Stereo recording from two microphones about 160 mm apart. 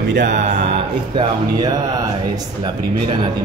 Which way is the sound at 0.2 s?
50° right (ahead or behind).